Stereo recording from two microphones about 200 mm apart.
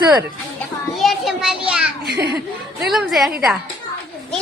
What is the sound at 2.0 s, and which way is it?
Speech, 55° right (ahead or behind).